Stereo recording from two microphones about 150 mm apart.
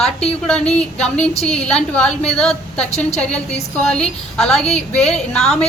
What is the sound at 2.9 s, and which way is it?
Speech, 45° left (ahead or behind).